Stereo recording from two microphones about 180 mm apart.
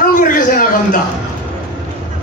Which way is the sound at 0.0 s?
50° left (ahead or behind).